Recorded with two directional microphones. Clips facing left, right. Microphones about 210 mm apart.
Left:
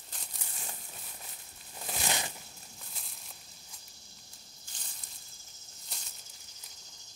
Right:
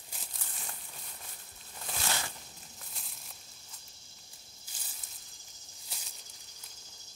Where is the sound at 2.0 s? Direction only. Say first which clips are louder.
Left 2 dB; 20° left (ahead or behind).